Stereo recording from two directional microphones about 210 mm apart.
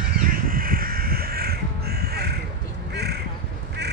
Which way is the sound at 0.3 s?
45° right (ahead or behind).